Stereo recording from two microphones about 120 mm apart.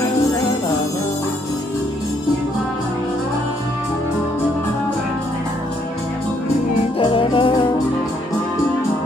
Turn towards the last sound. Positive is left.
turn(degrees=45)  # may be behind; listen again after turning